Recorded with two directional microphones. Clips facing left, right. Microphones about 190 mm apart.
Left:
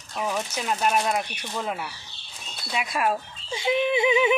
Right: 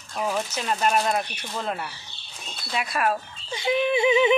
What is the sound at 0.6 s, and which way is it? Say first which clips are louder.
Speech: even; 5° left (ahead or behind).